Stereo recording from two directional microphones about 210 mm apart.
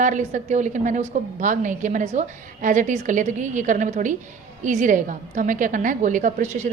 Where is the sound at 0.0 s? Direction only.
35° right (ahead or behind).